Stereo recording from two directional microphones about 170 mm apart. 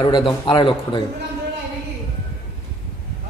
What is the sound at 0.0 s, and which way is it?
A man's voice, 25° left (ahead or behind).